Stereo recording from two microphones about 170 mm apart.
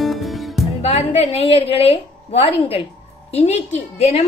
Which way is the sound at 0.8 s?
35° left (ahead or behind).